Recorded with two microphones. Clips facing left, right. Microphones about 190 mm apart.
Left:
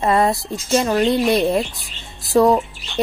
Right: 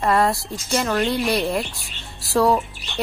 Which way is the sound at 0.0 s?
20° left (ahead or behind).